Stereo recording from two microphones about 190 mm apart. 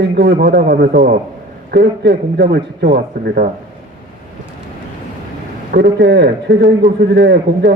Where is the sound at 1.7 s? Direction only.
60° right (ahead or behind).